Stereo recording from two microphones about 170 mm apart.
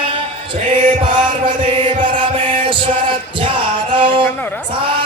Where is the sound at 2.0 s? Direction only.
30° right (ahead or behind).